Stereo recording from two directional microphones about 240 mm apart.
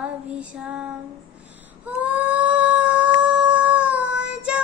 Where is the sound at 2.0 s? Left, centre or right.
Centre.